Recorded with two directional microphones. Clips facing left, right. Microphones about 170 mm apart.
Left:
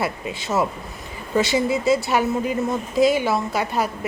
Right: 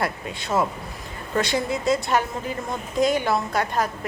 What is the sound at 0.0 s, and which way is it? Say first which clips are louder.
A woman's voice: left 2 dB; 5° left (ahead or behind).